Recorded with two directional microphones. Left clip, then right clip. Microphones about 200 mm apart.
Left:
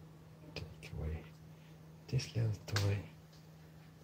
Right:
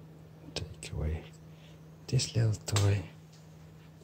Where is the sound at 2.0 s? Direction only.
20° right (ahead or behind).